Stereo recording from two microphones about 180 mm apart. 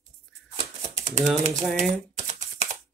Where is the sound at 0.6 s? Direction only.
40° right (ahead or behind).